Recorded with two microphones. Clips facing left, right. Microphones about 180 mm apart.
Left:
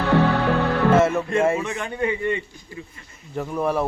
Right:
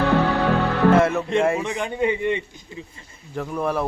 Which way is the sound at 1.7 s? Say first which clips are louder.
Right 2 dB; 15° right (ahead or behind).